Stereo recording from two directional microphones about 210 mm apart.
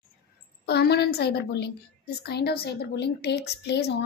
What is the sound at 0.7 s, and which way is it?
A woman's voice, 50° left (ahead or behind).